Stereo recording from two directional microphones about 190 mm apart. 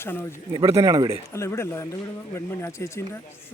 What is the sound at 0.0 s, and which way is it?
Speech, 10° left (ahead or behind).